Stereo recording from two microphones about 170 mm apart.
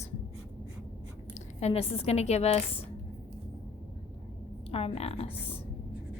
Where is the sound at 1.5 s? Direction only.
40° left (ahead or behind).